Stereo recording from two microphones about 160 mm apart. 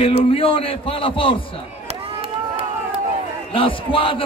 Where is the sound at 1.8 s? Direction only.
40° right (ahead or behind).